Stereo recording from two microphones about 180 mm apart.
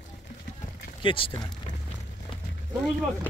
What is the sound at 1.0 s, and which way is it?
Speech, 30° left (ahead or behind).